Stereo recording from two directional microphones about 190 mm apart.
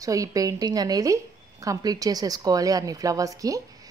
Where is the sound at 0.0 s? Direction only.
15° right (ahead or behind).